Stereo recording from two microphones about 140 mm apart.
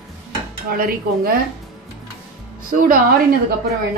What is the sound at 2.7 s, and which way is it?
Speech, 85° right.